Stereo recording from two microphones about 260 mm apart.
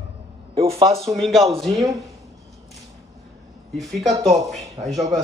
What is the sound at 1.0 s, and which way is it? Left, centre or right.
Speech, centre.